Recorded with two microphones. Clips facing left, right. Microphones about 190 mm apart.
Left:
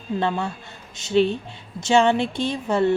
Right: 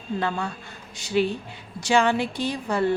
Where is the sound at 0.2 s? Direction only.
25° left (ahead or behind).